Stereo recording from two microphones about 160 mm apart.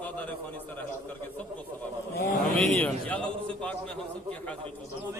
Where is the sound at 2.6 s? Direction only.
10° left (ahead or behind).